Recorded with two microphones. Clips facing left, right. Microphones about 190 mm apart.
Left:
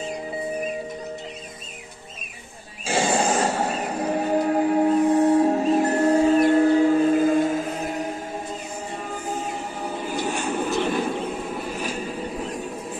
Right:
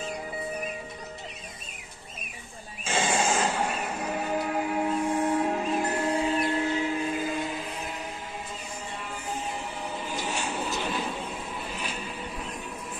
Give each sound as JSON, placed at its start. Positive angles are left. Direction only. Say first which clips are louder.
{"t": 2.8, "sound": "music", "louder": "left 5 dB", "side_deg": 35}
{"t": 9.3, "sound": "vehicle", "louder": "left 3 dB", "side_deg": 45}
{"t": 11.7, "sound": "music", "louder": "left 7 dB", "side_deg": 45}